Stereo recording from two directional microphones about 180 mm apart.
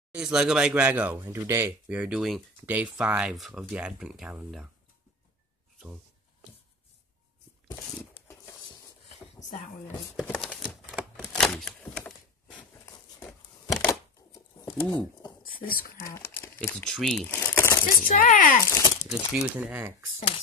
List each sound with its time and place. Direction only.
0.1 s speech: 5° right (ahead or behind)
10.2 s speech: 10° left (ahead or behind)
10.5 s typewriter: 5° right (ahead or behind)
14.3 s a sound: 20° left (ahead or behind)
15.6 s speech: 50° left (ahead or behind)
16.5 s speech: 5° left (ahead or behind)
17.3 s a sound: 15° left (ahead or behind)
17.8 s speech: 50° left (ahead or behind)
18.7 s speech: 15° left (ahead or behind)
19.5 s speech: 10° right (ahead or behind)